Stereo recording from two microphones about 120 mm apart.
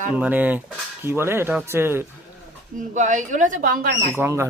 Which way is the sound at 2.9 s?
90° right.